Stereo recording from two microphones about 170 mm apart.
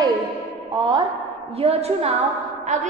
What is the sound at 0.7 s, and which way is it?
A woman's voice, 30° right (ahead or behind).